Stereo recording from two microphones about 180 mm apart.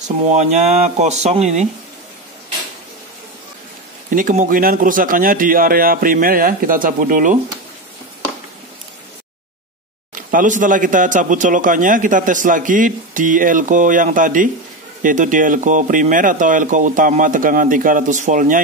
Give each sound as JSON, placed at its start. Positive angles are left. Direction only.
{"t": 0.4, "sound": "speech", "side_deg": -40}
{"t": 4.1, "sound": "a man's voice", "side_deg": -45}
{"t": 10.1, "sound": "a man's voice", "side_deg": -45}